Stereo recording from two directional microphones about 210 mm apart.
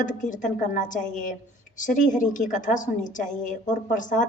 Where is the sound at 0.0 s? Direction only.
35° left (ahead or behind).